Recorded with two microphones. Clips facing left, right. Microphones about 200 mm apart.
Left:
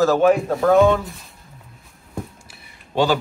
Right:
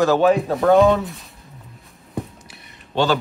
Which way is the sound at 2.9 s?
15° left (ahead or behind).